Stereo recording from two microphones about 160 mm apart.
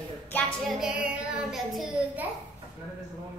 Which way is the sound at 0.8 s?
5° right (ahead or behind).